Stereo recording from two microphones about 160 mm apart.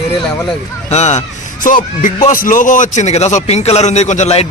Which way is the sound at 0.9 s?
45° left (ahead or behind).